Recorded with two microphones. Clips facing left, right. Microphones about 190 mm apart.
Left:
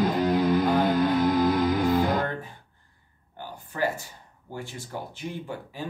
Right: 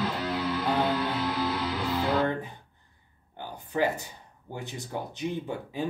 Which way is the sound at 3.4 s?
20° right (ahead or behind).